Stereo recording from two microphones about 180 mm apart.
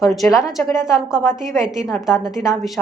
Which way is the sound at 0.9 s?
5° right (ahead or behind).